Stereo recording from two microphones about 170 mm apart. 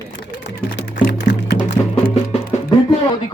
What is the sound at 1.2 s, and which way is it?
Music, 80° left.